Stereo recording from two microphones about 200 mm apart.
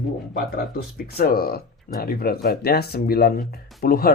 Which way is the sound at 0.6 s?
50° left (ahead or behind).